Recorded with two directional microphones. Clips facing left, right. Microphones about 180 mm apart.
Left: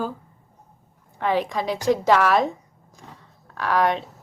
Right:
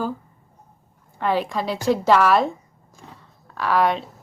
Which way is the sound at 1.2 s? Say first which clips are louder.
Even; 15° left (ahead or behind).